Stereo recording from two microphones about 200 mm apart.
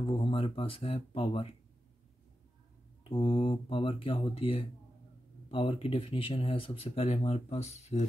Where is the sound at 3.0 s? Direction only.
25° left (ahead or behind).